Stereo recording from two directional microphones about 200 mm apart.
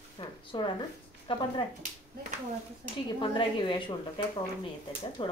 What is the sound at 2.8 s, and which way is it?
Speech, 35° right (ahead or behind).